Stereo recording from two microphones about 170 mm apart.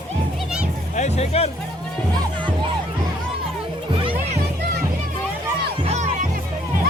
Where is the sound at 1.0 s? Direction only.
40° left (ahead or behind).